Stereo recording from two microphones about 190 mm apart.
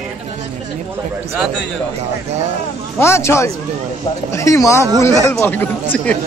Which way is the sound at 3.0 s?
15° left (ahead or behind).